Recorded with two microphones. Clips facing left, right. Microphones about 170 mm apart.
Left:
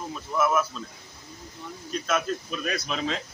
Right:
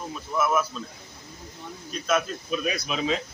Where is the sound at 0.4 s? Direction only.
5° right (ahead or behind).